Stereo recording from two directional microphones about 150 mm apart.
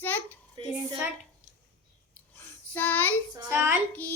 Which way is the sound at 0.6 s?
35° right (ahead or behind).